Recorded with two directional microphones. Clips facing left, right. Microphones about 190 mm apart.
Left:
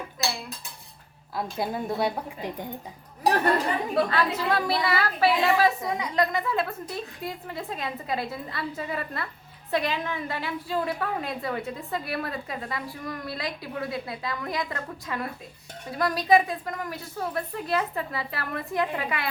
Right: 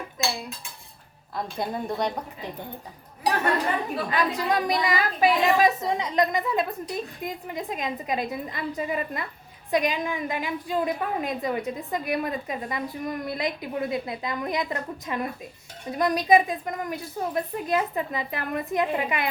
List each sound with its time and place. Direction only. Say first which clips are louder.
1.4 s a woman's voice: even; 5° left (ahead or behind)
3.2 s a woman's voice: left 2 dB; 35° left (ahead or behind)
4.1 s a woman's voice: right 1 dB; 15° right (ahead or behind)